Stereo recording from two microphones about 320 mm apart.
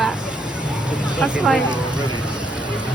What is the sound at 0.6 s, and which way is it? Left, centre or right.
Vehicle, centre.